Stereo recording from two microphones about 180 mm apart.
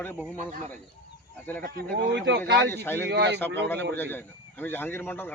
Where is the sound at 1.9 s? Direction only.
75° right (ahead or behind).